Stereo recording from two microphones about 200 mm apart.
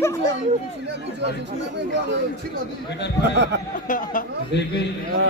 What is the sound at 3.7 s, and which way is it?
Speech, 40° left (ahead or behind).